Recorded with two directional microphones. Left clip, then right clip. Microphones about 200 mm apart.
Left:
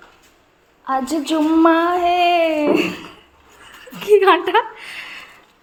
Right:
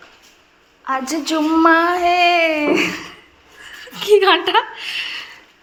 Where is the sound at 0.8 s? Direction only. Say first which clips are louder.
Left 1 dB; 25° left (ahead or behind).